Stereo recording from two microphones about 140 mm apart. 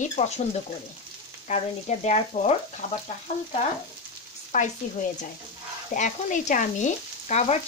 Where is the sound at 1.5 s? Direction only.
55° left (ahead or behind).